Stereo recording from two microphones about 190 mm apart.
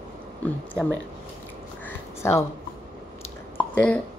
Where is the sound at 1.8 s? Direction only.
15° left (ahead or behind).